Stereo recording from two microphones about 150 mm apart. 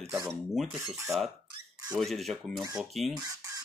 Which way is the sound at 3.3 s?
25° right (ahead or behind).